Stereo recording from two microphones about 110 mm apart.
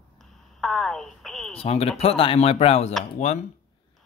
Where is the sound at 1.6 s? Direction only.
65° left (ahead or behind).